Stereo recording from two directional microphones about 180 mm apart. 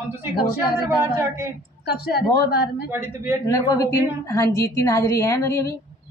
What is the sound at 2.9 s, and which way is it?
Speech, 15° right (ahead or behind).